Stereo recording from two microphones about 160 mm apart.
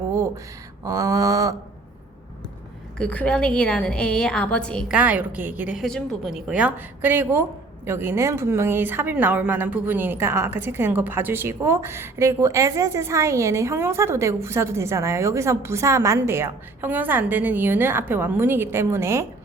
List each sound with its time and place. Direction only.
0.9 s a sound: 20° right (ahead or behind)
3.0 s a woman's voice: 10° left (ahead or behind)
4.9 s a woman's voice: 10° right (ahead or behind)